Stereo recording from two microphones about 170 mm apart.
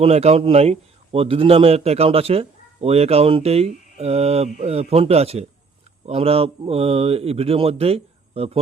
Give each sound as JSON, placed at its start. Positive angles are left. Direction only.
{"t": 0.0, "sound": "a man's voice", "side_deg": -40}